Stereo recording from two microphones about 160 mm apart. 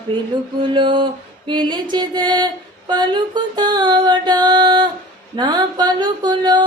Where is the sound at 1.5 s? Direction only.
30° right (ahead or behind).